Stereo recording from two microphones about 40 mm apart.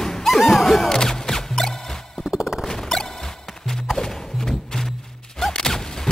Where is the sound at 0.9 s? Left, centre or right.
Centre.